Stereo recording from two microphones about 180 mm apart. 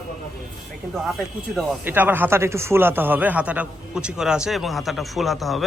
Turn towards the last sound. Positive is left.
turn(degrees=0)  # may be behind; listen again after turning